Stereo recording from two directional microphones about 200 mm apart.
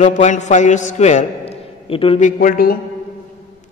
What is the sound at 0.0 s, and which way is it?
A man's voice, 35° left (ahead or behind).